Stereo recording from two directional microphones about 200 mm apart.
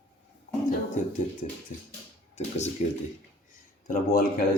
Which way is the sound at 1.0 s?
35° left (ahead or behind).